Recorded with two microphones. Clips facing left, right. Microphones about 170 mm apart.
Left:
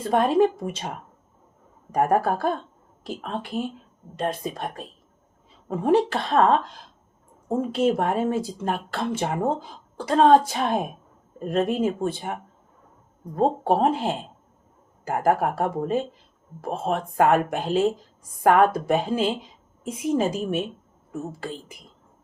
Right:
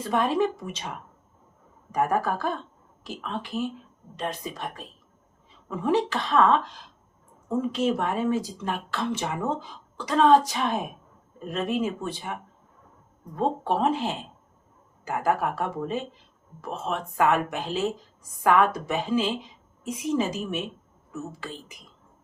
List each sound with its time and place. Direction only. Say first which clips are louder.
0.1 s a woman's voice: left 5 dB; 50° left (ahead or behind)